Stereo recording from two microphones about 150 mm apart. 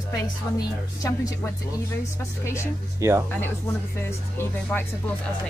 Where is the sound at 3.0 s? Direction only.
20° right (ahead or behind).